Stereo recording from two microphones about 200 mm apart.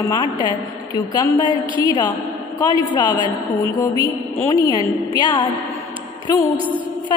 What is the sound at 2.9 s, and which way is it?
A woman's voice, 20° left (ahead or behind).